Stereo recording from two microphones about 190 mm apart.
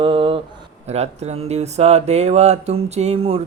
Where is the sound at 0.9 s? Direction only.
35° right (ahead or behind).